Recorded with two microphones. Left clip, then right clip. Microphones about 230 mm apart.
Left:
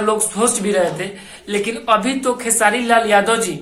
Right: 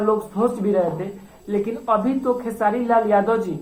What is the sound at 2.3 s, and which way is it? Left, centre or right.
A woman's voice, left.